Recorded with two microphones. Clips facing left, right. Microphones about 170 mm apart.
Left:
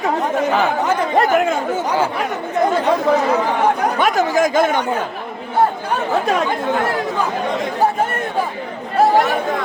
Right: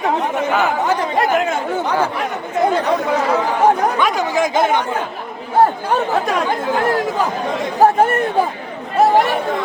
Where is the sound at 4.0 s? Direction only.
45° left (ahead or behind).